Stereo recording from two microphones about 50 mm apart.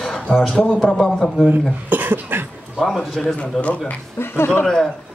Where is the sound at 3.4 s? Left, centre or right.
Left.